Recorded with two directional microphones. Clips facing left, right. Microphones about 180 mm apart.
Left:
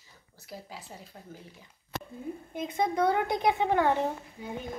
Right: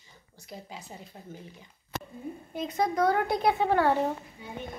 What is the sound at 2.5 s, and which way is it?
A woman's voice, 25° left (ahead or behind).